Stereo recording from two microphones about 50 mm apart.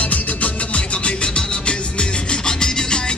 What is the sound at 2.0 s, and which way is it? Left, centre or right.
Music, centre.